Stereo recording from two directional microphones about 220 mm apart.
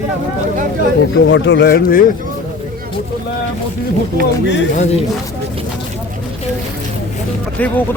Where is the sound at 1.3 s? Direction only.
55° left (ahead or behind).